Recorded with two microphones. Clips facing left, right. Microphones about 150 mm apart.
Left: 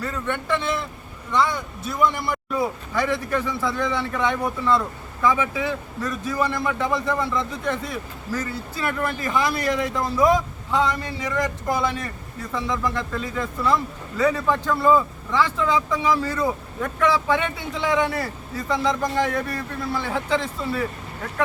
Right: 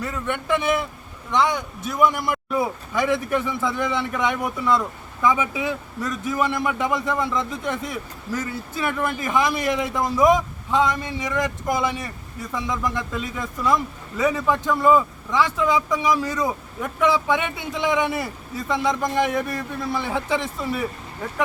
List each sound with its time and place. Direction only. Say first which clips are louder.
0.3 s a man's voice: right 3 dB; 15° right (ahead or behind)
2.0 s a man's voice: right 2 dB; 15° right (ahead or behind)